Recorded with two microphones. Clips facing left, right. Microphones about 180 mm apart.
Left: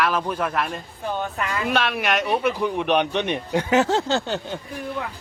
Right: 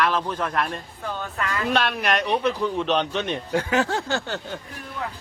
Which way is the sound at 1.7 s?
5° left (ahead or behind).